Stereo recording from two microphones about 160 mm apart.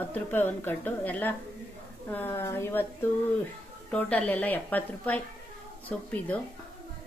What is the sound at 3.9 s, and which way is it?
A woman's voice, 5° left (ahead or behind).